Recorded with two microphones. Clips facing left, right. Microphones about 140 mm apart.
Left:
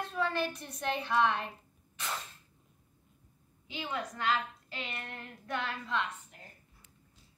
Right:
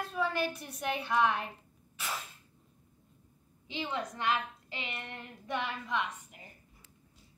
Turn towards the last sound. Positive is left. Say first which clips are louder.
# even
turn(degrees=-10)  # may be behind; listen again after turning